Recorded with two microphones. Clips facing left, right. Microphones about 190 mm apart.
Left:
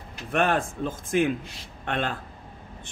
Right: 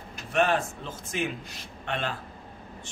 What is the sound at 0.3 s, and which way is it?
A man's voice, 55° left (ahead or behind).